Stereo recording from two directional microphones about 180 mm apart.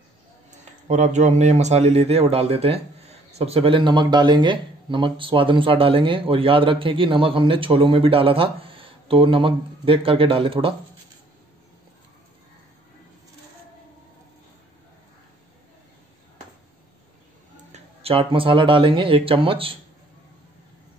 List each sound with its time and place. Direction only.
0.8 s speech: 40° right (ahead or behind)
17.7 s speech: 30° right (ahead or behind)